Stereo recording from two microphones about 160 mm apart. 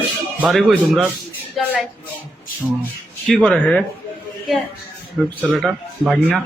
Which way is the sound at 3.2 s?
5° left (ahead or behind).